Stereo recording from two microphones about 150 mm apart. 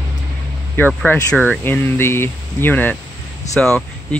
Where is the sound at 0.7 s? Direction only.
15° left (ahead or behind).